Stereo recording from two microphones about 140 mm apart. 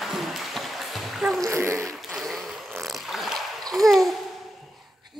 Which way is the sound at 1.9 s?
Centre (ahead or behind).